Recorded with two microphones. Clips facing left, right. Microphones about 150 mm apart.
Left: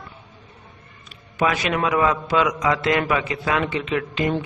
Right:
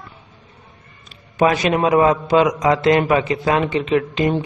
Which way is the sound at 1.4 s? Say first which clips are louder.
Right 5 dB; 30° right (ahead or behind).